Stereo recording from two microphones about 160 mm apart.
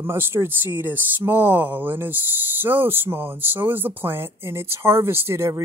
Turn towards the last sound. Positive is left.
turn(degrees=-15)  # may be behind; listen again after turning